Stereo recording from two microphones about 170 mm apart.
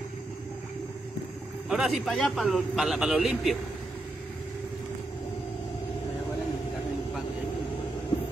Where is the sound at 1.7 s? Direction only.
Centre (ahead or behind).